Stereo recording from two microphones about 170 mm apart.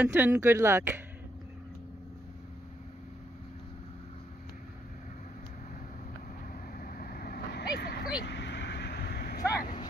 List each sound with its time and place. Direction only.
0.0 s speech: 10° right (ahead or behind)
6.8 s vehicle: 55° left (ahead or behind)
8.2 s vehicle: 90° left; by 9.4 s 70° left (ahead or behind)